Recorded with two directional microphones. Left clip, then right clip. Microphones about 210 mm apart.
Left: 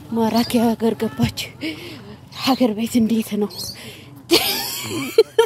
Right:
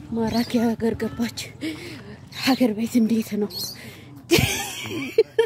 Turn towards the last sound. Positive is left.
turn(degrees=10)  # may be behind; listen again after turning